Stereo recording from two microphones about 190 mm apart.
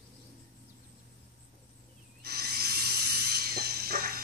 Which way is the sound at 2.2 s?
55° right (ahead or behind).